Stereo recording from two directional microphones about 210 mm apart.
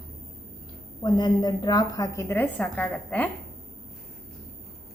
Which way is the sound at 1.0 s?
20° left (ahead or behind).